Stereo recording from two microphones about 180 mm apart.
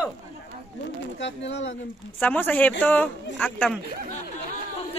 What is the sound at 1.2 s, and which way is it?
Speech, 90° left.